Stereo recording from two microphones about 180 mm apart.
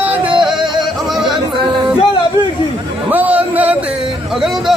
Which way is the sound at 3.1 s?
10° right (ahead or behind).